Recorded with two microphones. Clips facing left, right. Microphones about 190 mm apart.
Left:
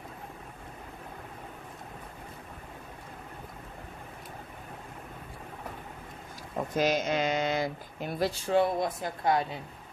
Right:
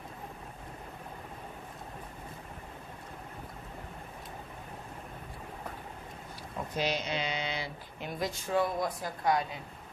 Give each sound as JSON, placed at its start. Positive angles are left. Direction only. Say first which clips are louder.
{"t": 6.7, "sound": "speech", "louder": "left 6 dB", "side_deg": 45}